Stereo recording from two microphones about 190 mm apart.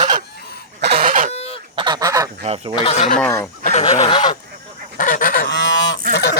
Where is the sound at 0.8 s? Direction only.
55° right (ahead or behind).